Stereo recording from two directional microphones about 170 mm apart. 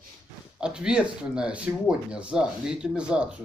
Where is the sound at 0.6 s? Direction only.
5° right (ahead or behind).